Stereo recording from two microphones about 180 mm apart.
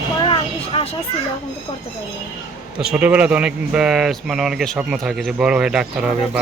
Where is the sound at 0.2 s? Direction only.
30° left (ahead or behind).